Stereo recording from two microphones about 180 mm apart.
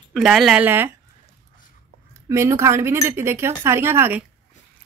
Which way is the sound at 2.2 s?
15° right (ahead or behind).